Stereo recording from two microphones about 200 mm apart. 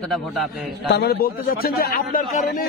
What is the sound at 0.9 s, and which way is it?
A man's voice, 50° left (ahead or behind).